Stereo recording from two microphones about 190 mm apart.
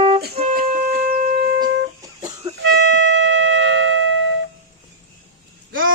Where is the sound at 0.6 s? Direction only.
40° right (ahead or behind).